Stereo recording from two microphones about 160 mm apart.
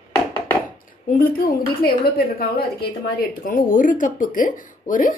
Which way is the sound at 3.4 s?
60° left (ahead or behind).